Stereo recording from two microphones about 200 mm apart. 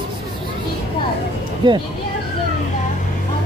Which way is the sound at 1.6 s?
20° right (ahead or behind).